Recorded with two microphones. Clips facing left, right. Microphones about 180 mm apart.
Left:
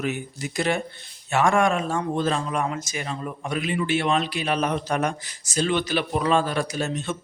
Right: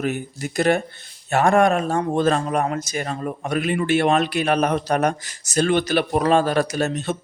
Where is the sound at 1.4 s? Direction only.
40° right (ahead or behind).